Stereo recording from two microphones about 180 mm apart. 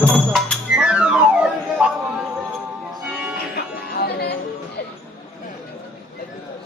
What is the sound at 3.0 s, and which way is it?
Music, 5° right (ahead or behind).